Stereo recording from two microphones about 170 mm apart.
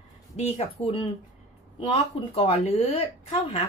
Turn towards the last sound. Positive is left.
turn(degrees=35)  # may be behind; listen again after turning